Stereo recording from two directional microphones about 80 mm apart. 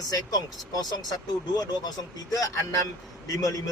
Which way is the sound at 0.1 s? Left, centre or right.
Left.